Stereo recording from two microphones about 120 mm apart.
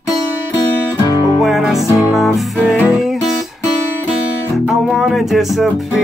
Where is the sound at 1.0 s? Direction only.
30° left (ahead or behind).